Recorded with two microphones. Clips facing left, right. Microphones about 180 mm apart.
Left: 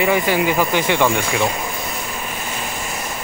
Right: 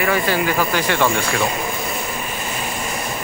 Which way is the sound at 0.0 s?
15° left (ahead or behind).